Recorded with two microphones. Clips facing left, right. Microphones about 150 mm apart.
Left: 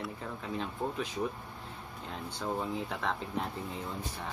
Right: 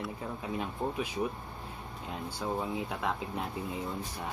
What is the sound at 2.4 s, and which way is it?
Speech, 10° right (ahead or behind).